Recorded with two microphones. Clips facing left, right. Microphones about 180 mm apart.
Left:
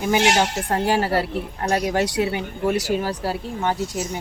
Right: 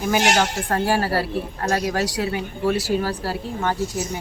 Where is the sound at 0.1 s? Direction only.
20° left (ahead or behind).